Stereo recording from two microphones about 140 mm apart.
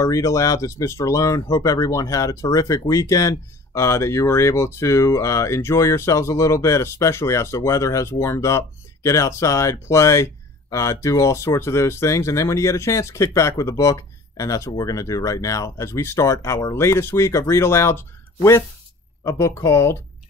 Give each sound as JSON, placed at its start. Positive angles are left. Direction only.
{"t": 0.0, "sound": "speech", "side_deg": 20}